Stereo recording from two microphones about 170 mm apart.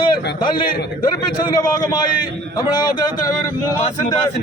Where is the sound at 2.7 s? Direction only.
25° left (ahead or behind).